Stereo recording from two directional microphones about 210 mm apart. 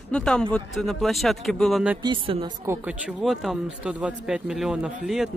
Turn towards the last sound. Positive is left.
turn(degrees=0)  # may be behind; listen again after turning